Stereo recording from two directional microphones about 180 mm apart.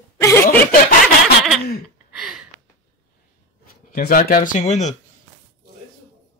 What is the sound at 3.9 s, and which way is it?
Speech, 55° left (ahead or behind).